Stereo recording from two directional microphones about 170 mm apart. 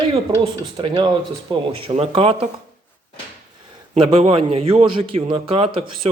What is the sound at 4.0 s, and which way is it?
Speech, 30° right (ahead or behind).